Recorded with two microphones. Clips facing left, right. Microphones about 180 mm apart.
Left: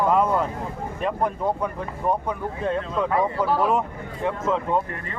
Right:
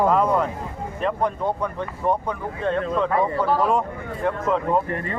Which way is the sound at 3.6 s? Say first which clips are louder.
Even; 5° left (ahead or behind).